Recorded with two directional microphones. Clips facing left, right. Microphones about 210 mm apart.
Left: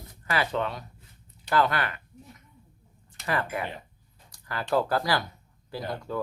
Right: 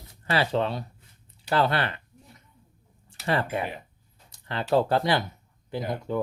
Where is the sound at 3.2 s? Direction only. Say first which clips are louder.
Right 3 dB; 30° right (ahead or behind).